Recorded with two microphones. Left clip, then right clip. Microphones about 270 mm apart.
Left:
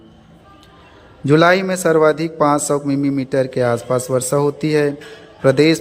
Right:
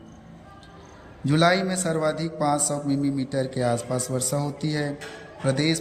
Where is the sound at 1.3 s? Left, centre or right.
Centre.